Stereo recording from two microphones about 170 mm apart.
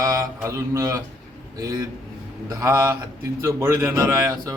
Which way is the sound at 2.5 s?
20° right (ahead or behind).